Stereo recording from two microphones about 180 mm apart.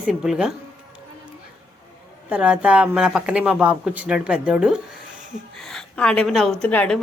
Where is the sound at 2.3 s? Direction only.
5° right (ahead or behind).